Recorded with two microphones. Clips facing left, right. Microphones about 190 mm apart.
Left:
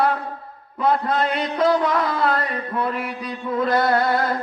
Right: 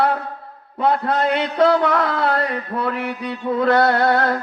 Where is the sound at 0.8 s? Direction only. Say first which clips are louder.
Right 1 dB; 70° right (ahead or behind).